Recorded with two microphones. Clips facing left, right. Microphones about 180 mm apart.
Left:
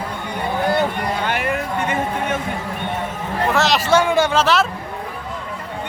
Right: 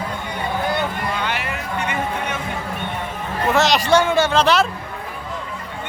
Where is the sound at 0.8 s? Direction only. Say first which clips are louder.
Left 3 dB; 45° left (ahead or behind).